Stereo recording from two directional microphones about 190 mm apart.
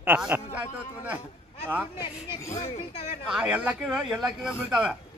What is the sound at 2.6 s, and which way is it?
Speech, 30° left (ahead or behind).